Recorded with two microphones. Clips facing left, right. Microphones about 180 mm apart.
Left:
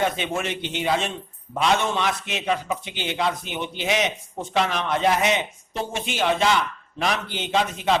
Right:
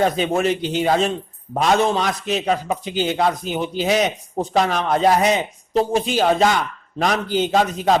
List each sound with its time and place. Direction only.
0.0 s a man's voice: 35° right (ahead or behind)